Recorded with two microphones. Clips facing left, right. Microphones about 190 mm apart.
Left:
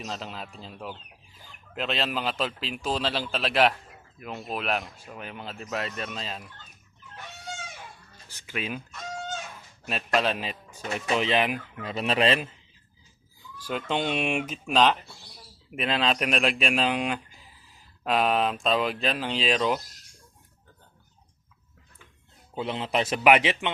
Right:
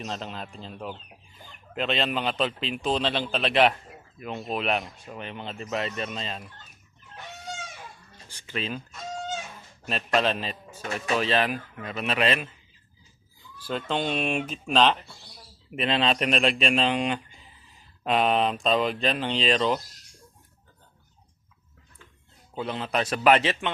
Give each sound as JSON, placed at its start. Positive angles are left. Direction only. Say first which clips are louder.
{"t": 0.0, "sound": "speech", "louder": "right 2 dB", "side_deg": 0}
{"t": 8.4, "sound": "a man's voice", "louder": "right 1 dB", "side_deg": 10}
{"t": 9.8, "sound": "a man's voice", "louder": "right 1 dB", "side_deg": 5}
{"t": 11.8, "sound": "speech", "louder": "left 2 dB", "side_deg": 30}
{"t": 13.6, "sound": "a man's voice", "louder": "even", "side_deg": 15}
{"t": 22.5, "sound": "a man's voice", "louder": "left 1 dB", "side_deg": 25}